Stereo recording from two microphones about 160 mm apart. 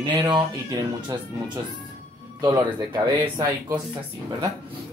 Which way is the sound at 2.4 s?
25° right (ahead or behind).